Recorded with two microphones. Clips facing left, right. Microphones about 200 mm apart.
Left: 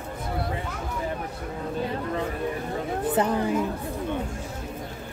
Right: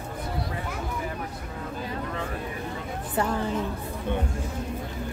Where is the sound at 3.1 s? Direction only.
20° left (ahead or behind).